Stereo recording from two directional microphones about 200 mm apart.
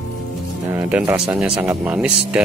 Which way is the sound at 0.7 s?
10° right (ahead or behind).